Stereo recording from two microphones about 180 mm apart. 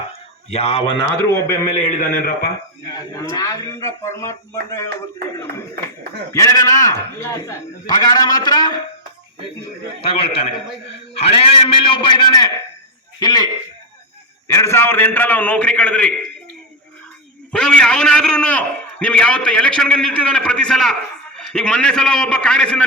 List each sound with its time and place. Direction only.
0.5 s a man's voice: 35° left (ahead or behind)
1.6 s a man's voice: 50° left (ahead or behind)
2.9 s speech: 20° left (ahead or behind)
6.3 s speech: 20° left (ahead or behind)
10.0 s a man's voice: 30° left (ahead or behind); by 16.1 s 5° left (ahead or behind)
17.5 s a man's voice: 5° left (ahead or behind)